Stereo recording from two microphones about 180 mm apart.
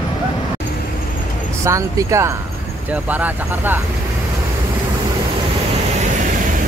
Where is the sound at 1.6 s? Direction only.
15° right (ahead or behind).